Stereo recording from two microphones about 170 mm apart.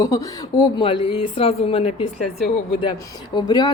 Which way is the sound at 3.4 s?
25° left (ahead or behind).